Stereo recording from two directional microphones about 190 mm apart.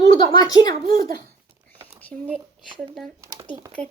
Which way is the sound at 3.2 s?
20° right (ahead or behind).